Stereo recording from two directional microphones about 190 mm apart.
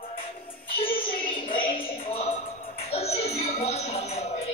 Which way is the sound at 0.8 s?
25° left (ahead or behind).